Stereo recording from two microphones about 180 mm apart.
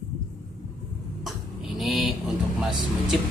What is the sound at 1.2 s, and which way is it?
Vehicle, centre (ahead or behind).